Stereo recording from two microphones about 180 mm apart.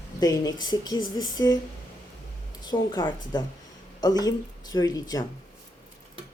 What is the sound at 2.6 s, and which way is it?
Speech, 25° left (ahead or behind).